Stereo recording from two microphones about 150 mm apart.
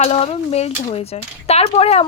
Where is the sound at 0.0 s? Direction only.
45° left (ahead or behind).